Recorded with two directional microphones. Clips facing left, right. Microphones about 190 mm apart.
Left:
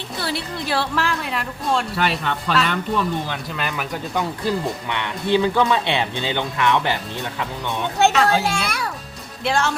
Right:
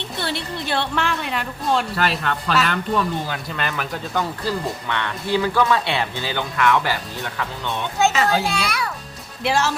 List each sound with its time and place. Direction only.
0.2 s speech: centre (ahead or behind)
4.1 s speech: 15° left (ahead or behind)
8.1 s speech: centre (ahead or behind)
8.4 s a child's voice: 45° left (ahead or behind)
9.4 s speech: 5° right (ahead or behind)